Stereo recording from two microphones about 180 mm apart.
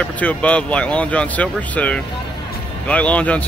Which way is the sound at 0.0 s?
5° left (ahead or behind).